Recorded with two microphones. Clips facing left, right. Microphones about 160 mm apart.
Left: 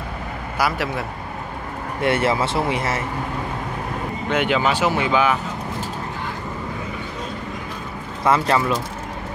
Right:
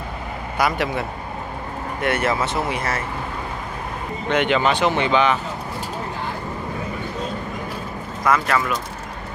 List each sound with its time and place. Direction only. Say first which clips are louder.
0.6 s a man's voice: right 1 dB; centre (ahead or behind)
2.0 s speech: left 2 dB; 25° left (ahead or behind)
4.3 s speech: right 1 dB; 5° left (ahead or behind)
8.2 s speech: left 2 dB; 30° left (ahead or behind)